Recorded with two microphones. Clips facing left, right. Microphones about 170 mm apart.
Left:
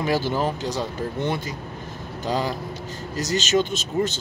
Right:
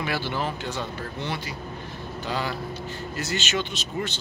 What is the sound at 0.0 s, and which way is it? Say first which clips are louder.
Speech: left 6 dB; 40° left (ahead or behind).